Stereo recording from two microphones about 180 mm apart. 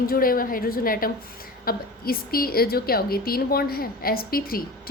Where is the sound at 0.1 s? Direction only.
55° left (ahead or behind).